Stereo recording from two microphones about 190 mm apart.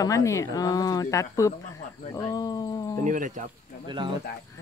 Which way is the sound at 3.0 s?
40° right (ahead or behind).